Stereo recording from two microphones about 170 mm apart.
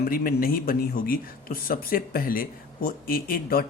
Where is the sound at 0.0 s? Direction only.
60° left (ahead or behind).